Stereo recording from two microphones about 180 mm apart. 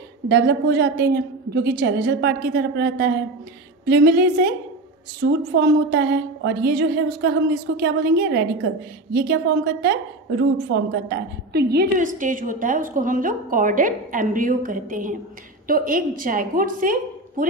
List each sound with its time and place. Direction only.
0.3 s a woman's voice: 70° right (ahead or behind); by 17.5 s 50° right (ahead or behind)